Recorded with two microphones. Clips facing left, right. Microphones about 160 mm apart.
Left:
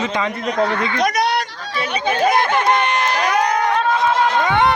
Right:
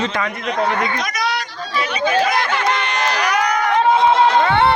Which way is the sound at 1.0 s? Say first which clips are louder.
Left 5 dB; 60° left (ahead or behind).